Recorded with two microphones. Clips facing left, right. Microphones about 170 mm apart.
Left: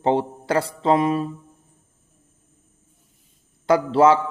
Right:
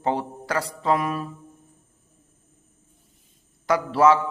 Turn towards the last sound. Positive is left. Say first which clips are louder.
# left 3 dB
turn(degrees=25)  # may be behind; listen again after turning